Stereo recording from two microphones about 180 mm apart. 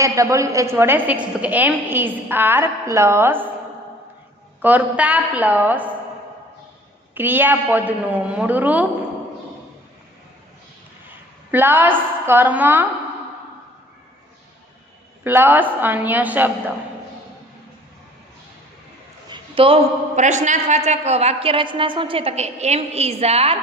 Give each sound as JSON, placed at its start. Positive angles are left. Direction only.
{"t": 0.0, "sound": "a woman's voice", "side_deg": -15}
{"t": 4.6, "sound": "a woman's voice", "side_deg": -10}
{"t": 7.1, "sound": "a woman's voice", "side_deg": -10}
{"t": 11.5, "sound": "a woman's voice", "side_deg": -10}
{"t": 15.2, "sound": "a woman's voice", "side_deg": -10}
{"t": 19.3, "sound": "a man's voice", "side_deg": -30}